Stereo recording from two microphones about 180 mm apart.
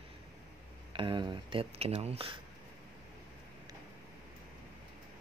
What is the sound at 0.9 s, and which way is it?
Speech, 25° right (ahead or behind).